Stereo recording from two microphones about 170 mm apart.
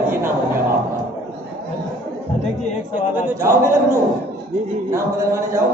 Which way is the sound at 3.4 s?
15° right (ahead or behind).